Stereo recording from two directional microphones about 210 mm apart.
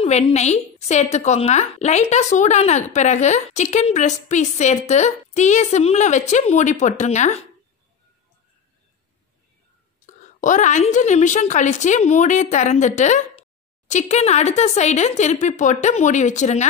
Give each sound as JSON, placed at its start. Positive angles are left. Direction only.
{"t": 0.0, "sound": "a woman's voice", "side_deg": 30}
{"t": 10.0, "sound": "a woman's voice", "side_deg": 35}